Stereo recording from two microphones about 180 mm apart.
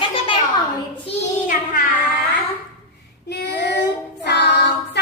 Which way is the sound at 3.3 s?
65° left (ahead or behind).